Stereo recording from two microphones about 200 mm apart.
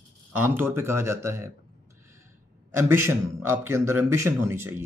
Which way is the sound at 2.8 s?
10° right (ahead or behind).